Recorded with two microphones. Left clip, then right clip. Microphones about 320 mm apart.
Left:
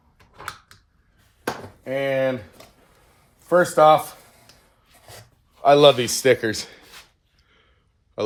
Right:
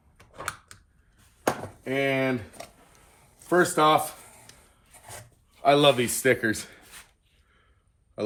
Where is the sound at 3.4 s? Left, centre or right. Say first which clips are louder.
Left 5 dB; centre.